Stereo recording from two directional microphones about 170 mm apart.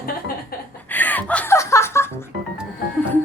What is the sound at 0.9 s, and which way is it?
Laughter, 10° left (ahead or behind).